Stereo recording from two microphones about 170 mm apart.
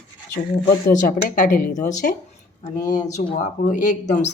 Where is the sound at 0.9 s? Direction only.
50° left (ahead or behind).